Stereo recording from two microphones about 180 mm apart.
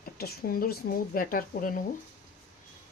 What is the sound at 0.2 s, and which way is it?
A woman's voice, 55° left (ahead or behind).